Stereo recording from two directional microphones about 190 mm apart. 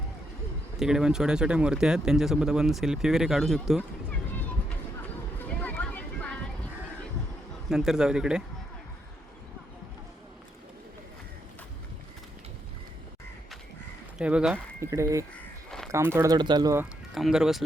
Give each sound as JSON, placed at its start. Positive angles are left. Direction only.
{"t": 0.8, "sound": "speech", "side_deg": -5}
{"t": 5.5, "sound": "a sound", "side_deg": 5}
{"t": 7.7, "sound": "speech", "side_deg": -5}
{"t": 14.2, "sound": "speech", "side_deg": -5}
{"t": 17.2, "sound": "speech", "side_deg": 0}